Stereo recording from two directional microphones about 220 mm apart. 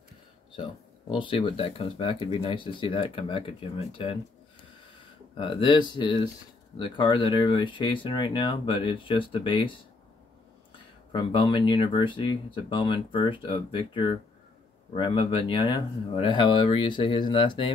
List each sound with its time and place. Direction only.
1.1 s speech: 20° left (ahead or behind)
5.3 s speech: 20° left (ahead or behind)
11.1 s speech: 20° left (ahead or behind)